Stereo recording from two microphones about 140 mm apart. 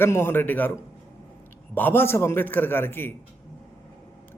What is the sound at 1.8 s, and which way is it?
A man's voice, 15° left (ahead or behind).